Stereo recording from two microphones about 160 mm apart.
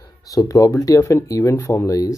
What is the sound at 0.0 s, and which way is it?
Speech, 20° left (ahead or behind).